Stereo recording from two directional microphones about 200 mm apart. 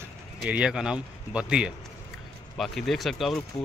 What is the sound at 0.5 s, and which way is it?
Speech, 5° right (ahead or behind).